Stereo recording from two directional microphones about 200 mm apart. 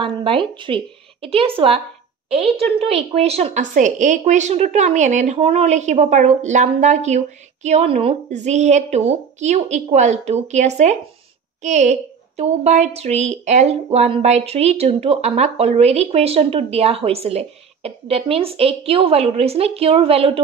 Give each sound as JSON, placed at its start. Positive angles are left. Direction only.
{"t": 0.0, "sound": "a woman's voice", "side_deg": -25}